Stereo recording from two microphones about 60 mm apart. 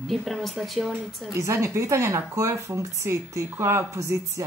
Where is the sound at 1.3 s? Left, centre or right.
Right.